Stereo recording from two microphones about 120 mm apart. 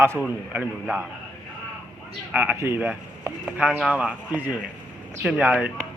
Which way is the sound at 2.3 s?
15° right (ahead or behind).